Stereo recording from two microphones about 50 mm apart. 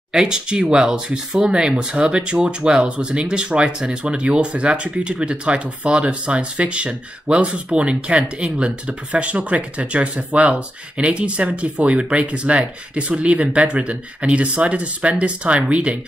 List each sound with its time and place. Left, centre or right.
0.1 s speech: centre